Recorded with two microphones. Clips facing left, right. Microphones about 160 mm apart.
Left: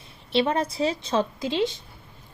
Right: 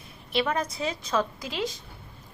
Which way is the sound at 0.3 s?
30° left (ahead or behind).